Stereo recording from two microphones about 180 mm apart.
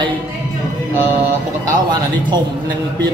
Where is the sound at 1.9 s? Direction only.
25° right (ahead or behind).